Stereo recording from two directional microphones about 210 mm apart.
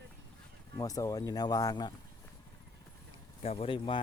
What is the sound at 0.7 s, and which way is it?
Speech, 15° left (ahead or behind).